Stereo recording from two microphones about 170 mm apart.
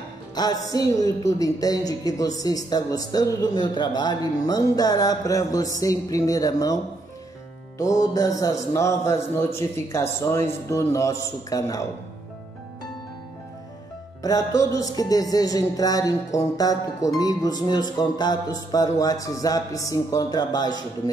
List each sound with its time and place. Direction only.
0.3 s a man's voice: 25° left (ahead or behind)
14.2 s speech: 20° left (ahead or behind)